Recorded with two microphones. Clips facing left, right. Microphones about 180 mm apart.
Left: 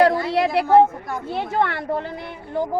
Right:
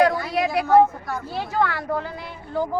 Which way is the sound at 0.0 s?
25° left (ahead or behind).